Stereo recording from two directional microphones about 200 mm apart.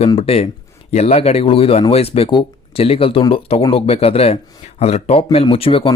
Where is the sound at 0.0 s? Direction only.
30° left (ahead or behind).